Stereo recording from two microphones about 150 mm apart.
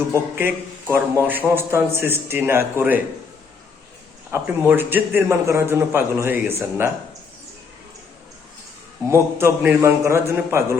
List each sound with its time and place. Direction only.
0.1 s a man's voice: 15° right (ahead or behind)
4.3 s a man's voice: 10° right (ahead or behind)
9.0 s a man's voice: 15° right (ahead or behind)